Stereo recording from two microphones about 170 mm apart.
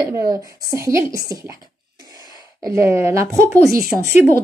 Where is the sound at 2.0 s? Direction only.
20° right (ahead or behind).